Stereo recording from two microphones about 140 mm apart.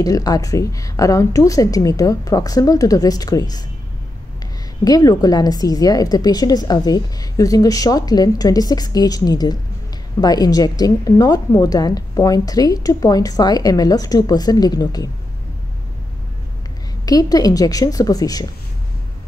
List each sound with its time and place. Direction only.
0.0 s a woman's voice: 25° left (ahead or behind)
4.8 s a woman's voice: 25° left (ahead or behind)
17.0 s a woman's voice: 25° left (ahead or behind)